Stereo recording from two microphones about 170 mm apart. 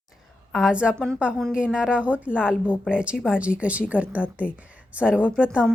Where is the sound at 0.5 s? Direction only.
5° right (ahead or behind).